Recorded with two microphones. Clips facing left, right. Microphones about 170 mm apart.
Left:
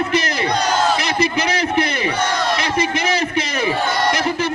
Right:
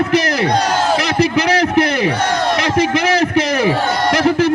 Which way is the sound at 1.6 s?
60° right (ahead or behind).